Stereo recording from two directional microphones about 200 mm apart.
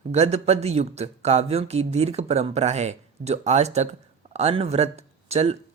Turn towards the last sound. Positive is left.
turn(degrees=-30)  # may be behind; listen again after turning